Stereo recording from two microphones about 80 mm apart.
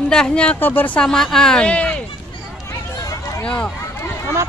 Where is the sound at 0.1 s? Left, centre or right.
Centre.